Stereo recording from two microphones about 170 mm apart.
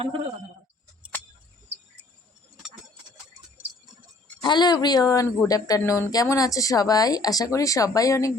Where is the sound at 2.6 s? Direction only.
5° right (ahead or behind).